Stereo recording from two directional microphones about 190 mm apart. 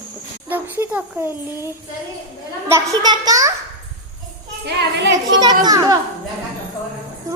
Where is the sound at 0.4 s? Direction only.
10° right (ahead or behind).